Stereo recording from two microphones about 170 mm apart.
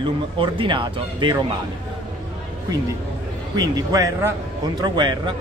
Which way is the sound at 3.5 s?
20° right (ahead or behind).